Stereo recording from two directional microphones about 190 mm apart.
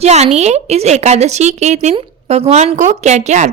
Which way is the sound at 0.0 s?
35° right (ahead or behind).